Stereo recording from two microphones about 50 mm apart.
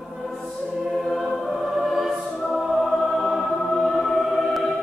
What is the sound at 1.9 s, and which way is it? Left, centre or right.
Music, centre.